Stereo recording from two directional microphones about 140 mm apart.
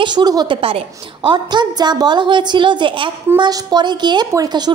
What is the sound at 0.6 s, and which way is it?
A woman's voice, 40° right (ahead or behind).